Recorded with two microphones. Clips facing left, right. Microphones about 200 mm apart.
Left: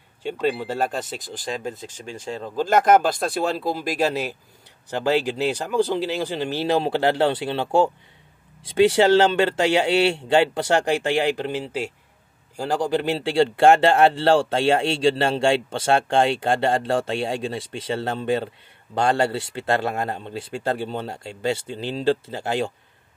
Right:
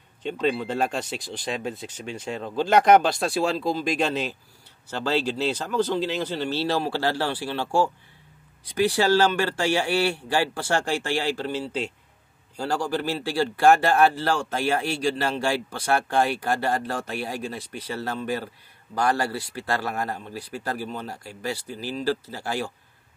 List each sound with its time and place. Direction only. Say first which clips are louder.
0.2 s speech: left 1 dB; 5° left (ahead or behind)
1.7 s speech: even; 35° left (ahead or behind)
2.9 s a man's voice: even; 5° left (ahead or behind); by 22.7 s 20° left (ahead or behind)